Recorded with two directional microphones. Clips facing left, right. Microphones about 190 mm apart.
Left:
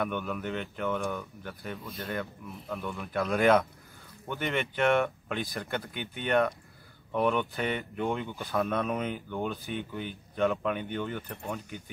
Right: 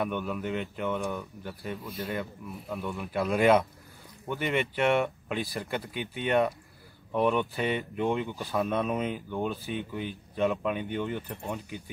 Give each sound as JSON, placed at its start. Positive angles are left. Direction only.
{"t": 0.0, "sound": "speech", "side_deg": 0}
{"t": 11.1, "sound": "speech", "side_deg": -20}